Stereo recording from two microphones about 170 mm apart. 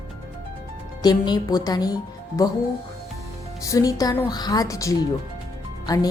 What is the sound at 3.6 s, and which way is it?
A woman's voice, 20° left (ahead or behind).